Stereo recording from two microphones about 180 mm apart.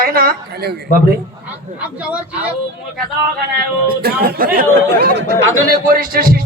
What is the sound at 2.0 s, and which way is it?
Speech, 5° right (ahead or behind).